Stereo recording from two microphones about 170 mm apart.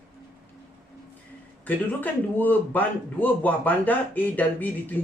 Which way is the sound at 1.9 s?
10° left (ahead or behind).